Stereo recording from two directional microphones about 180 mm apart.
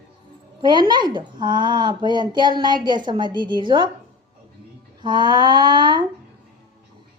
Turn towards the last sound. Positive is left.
turn(degrees=-25)  # may be behind; listen again after turning